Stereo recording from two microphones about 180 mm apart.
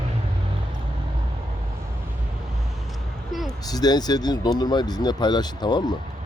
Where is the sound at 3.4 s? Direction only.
20° left (ahead or behind).